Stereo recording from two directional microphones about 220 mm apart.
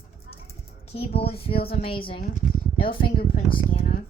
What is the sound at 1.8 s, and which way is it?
Speech, 25° left (ahead or behind).